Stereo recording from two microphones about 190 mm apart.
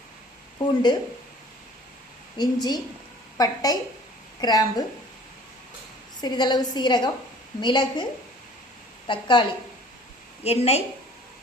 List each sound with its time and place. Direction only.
0.6 s a woman's voice: 25° left (ahead or behind)
2.4 s a woman's voice: 20° left (ahead or behind)
6.1 s a woman's voice: 20° left (ahead or behind)
9.0 s a woman's voice: 25° left (ahead or behind)